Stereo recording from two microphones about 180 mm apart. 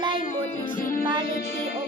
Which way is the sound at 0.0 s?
25° right (ahead or behind).